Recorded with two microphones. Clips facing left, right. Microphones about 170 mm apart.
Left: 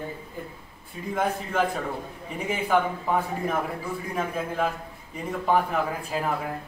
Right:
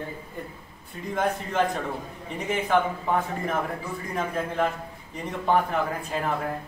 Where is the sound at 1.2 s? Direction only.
5° left (ahead or behind).